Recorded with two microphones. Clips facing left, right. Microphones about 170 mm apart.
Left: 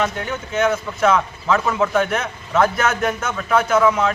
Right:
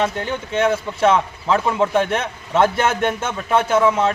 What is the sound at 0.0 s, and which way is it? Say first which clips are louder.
Speech: right 1 dB; 30° right (ahead or behind).